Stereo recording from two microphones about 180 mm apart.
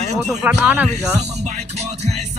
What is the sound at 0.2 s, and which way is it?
Speech, 5° right (ahead or behind).